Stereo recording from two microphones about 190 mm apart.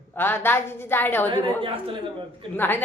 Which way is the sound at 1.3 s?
30° right (ahead or behind).